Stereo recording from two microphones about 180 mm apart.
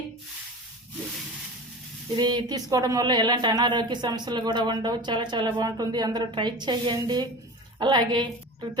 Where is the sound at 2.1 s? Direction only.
25° right (ahead or behind).